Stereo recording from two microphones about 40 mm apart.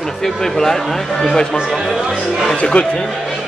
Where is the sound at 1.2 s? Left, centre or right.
Centre.